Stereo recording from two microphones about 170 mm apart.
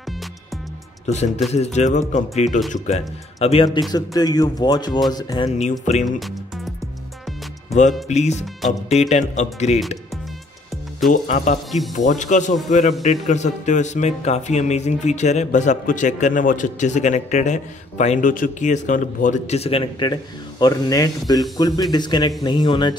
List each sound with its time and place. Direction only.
1.0 s speech: 40° left (ahead or behind); by 5.5 s 25° left (ahead or behind)
5.6 s speech: 40° left (ahead or behind)
6.0 s music: centre (ahead or behind)
8.1 s speech: 40° left (ahead or behind)
11.1 s speech: 50° left (ahead or behind); by 22.9 s 25° left (ahead or behind)